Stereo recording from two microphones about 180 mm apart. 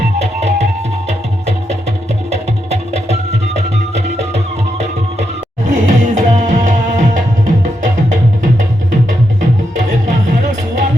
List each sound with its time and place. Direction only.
0.2 s music: 40° right (ahead or behind)
2.3 s music: 35° right (ahead or behind)
5.6 s music: 40° right (ahead or behind)